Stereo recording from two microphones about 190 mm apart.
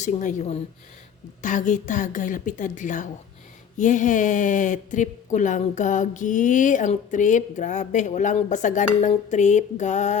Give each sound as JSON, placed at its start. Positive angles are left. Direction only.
{"t": 0.0, "sound": "speech", "side_deg": 40}